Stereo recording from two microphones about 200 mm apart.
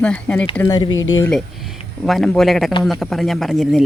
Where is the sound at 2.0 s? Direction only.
Centre (ahead or behind).